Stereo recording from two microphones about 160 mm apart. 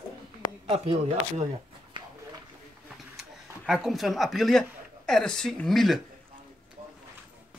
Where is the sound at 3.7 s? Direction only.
Centre (ahead or behind).